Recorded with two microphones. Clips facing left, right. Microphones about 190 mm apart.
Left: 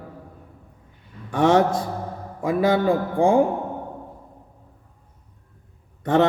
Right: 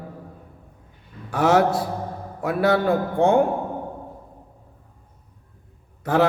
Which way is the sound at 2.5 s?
75° right (ahead or behind).